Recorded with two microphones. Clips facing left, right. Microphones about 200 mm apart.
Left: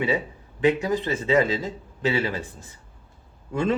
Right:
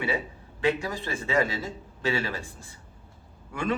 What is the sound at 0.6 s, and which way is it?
A man's voice, 20° left (ahead or behind).